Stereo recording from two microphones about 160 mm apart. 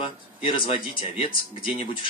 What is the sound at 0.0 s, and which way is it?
Speech, 30° left (ahead or behind).